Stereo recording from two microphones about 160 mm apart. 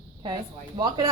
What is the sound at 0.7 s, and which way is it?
Speech, 30° right (ahead or behind).